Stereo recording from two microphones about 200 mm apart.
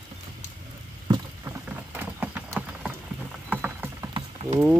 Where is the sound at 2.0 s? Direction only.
10° right (ahead or behind).